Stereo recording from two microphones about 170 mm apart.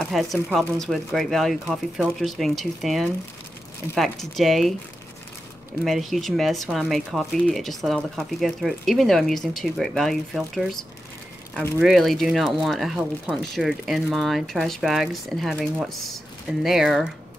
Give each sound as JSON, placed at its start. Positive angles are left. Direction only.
{"t": 0.0, "sound": "speech", "side_deg": 0}
{"t": 5.9, "sound": "speech", "side_deg": 0}
{"t": 11.8, "sound": "speech", "side_deg": 0}